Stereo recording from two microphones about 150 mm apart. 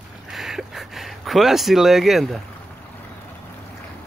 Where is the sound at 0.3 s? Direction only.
Centre (ahead or behind).